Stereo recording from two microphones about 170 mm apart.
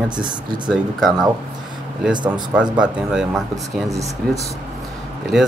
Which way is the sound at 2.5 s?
5° right (ahead or behind).